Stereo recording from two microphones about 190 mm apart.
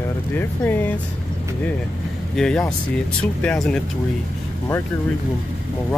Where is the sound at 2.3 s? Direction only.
Centre (ahead or behind).